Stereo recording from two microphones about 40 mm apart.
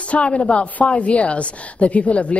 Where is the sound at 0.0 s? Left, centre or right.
Left.